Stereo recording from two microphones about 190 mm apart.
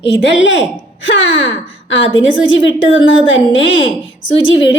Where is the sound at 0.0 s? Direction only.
70° left (ahead or behind).